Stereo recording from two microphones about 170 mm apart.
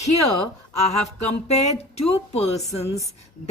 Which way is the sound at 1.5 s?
40° left (ahead or behind).